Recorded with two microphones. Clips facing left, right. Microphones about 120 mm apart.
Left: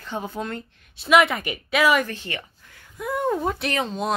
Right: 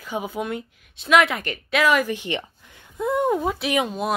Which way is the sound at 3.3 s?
Centre (ahead or behind).